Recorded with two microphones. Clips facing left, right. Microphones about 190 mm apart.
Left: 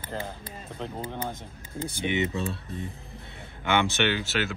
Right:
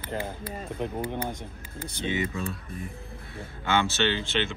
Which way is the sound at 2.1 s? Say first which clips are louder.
Left 1 dB; 25° left (ahead or behind).